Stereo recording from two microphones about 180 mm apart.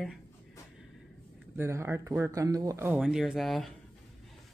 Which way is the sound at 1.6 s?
15° right (ahead or behind).